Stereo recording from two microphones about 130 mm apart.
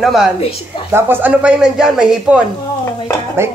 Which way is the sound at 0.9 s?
15° right (ahead or behind).